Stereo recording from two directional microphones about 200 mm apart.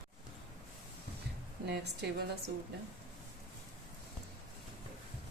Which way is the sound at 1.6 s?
55° right (ahead or behind).